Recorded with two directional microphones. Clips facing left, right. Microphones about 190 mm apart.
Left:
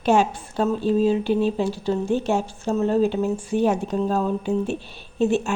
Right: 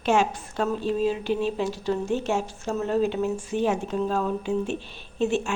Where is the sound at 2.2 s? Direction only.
35° left (ahead or behind).